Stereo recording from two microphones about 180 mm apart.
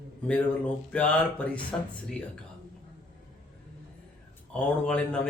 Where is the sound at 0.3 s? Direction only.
5° left (ahead or behind).